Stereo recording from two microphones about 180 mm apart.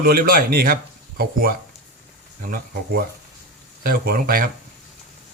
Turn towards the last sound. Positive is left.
turn(degrees=-50)  # may be behind; listen again after turning